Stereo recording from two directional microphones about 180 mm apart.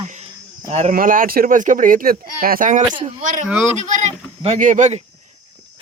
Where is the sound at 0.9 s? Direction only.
50° right (ahead or behind).